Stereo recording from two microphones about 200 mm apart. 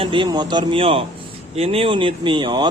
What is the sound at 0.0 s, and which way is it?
Speech, 25° right (ahead or behind).